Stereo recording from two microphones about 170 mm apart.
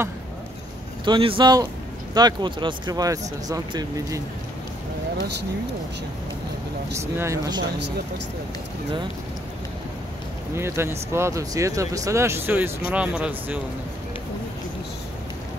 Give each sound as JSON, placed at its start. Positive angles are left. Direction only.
{"t": 1.0, "sound": "speech", "side_deg": -30}
{"t": 6.9, "sound": "speech", "side_deg": -15}
{"t": 10.5, "sound": "speech", "side_deg": -15}